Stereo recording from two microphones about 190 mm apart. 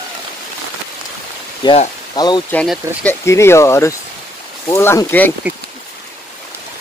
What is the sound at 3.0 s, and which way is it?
Speech, 15° left (ahead or behind).